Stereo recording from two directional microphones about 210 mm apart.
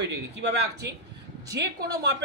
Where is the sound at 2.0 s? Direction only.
55° right (ahead or behind).